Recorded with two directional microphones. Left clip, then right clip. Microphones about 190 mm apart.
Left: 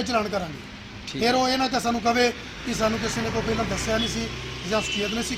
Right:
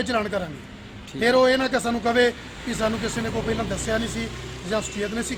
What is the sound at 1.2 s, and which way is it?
Speech, 30° right (ahead or behind).